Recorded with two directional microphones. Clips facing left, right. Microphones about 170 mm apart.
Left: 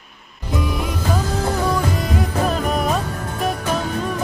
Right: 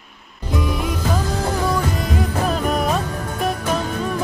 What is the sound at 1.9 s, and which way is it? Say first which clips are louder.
Music: left 1 dB; centre (ahead or behind).